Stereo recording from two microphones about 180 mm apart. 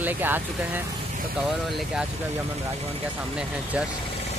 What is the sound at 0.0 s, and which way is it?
Speech, 10° right (ahead or behind).